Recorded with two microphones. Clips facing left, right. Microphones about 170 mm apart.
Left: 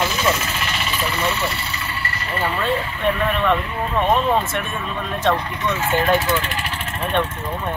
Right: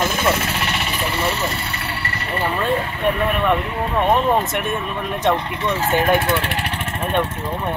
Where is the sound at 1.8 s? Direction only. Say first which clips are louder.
Right 1 dB; 70° right (ahead or behind).